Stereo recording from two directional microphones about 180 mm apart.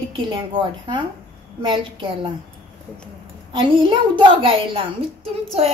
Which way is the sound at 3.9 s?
30° right (ahead or behind).